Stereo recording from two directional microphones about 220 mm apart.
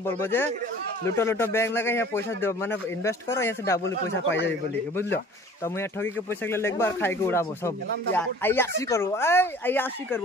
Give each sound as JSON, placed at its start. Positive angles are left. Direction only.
{"t": 0.0, "sound": "speech", "side_deg": 10}